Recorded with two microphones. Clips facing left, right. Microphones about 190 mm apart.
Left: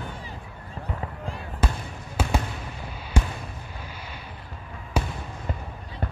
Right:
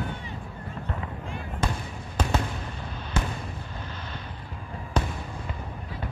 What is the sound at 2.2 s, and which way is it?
Fireworks, 5° left (ahead or behind).